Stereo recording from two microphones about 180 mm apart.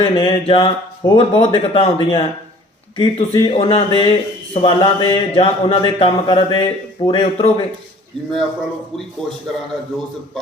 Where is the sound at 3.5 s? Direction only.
30° left (ahead or behind).